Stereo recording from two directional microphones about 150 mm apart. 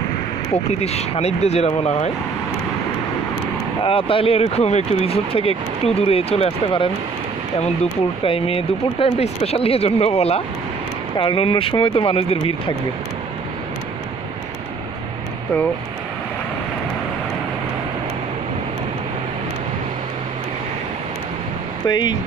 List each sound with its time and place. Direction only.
0.7 s speech: 45° left (ahead or behind)
3.8 s speech: 35° left (ahead or behind)
8.2 s speech: 40° left (ahead or behind)
21.8 s speech: 25° left (ahead or behind)